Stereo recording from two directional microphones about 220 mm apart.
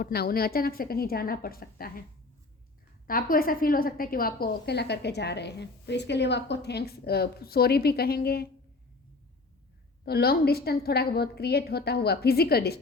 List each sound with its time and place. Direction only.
0.0 s a woman's voice: 45° left (ahead or behind)
3.1 s a woman's voice: 40° left (ahead or behind)
10.1 s a woman's voice: 45° left (ahead or behind)